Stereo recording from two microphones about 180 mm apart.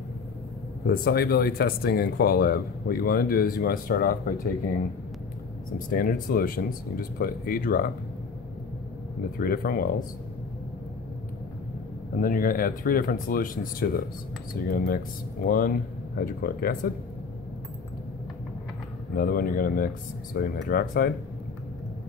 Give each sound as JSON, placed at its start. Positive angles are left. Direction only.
{"t": 0.8, "sound": "speech", "side_deg": 55}
{"t": 5.9, "sound": "speech", "side_deg": 50}
{"t": 9.4, "sound": "speech", "side_deg": 55}
{"t": 12.2, "sound": "speech", "side_deg": 50}
{"t": 19.1, "sound": "speech", "side_deg": 55}